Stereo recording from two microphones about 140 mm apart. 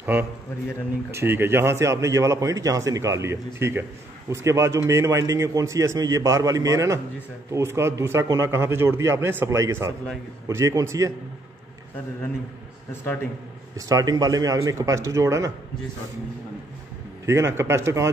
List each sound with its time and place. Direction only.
0.0 s a man's voice: 15° right (ahead or behind)
13.7 s speech: 25° right (ahead or behind)
17.3 s speech: 20° right (ahead or behind)